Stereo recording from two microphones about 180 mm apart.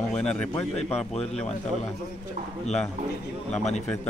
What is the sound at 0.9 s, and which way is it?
Speech, 35° left (ahead or behind).